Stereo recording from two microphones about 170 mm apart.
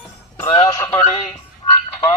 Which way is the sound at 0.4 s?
35° left (ahead or behind).